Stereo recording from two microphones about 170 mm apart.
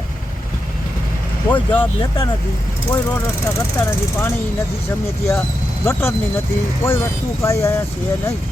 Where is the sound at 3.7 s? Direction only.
15° left (ahead or behind).